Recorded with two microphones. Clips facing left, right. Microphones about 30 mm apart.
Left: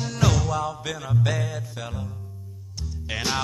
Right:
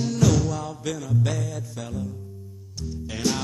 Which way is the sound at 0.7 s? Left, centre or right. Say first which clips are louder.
Even; left.